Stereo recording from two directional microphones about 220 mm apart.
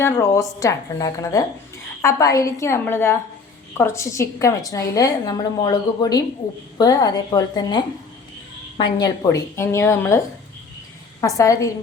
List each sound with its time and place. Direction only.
0.0 s a woman's voice: 15° left (ahead or behind)
8.8 s a woman's voice: 20° left (ahead or behind)